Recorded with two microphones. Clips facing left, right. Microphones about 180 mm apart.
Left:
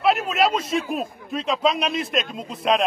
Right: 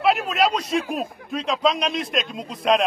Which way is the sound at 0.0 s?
Centre (ahead or behind).